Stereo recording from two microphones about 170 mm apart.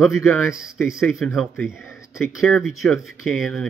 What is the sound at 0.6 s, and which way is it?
Speech, 5° right (ahead or behind).